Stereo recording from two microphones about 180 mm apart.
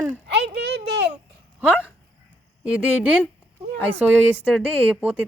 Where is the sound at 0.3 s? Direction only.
70° right (ahead or behind).